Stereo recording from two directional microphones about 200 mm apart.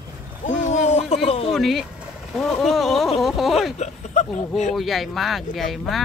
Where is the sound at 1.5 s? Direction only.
Centre (ahead or behind).